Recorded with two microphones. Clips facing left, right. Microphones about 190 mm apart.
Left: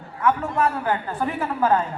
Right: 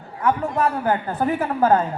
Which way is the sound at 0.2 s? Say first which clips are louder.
Right 1 dB; 35° right (ahead or behind).